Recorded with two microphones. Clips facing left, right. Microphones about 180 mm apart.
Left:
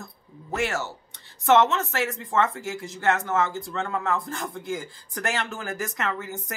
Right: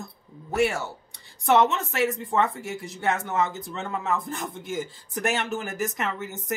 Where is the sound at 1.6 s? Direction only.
15° right (ahead or behind).